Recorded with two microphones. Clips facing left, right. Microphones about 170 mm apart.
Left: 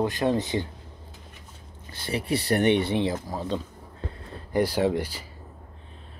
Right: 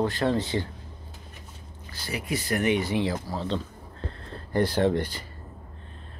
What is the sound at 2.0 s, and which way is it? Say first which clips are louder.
Speech: left 4 dB; 30° left (ahead or behind).